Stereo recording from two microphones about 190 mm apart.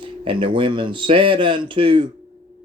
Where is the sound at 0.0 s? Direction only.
25° right (ahead or behind).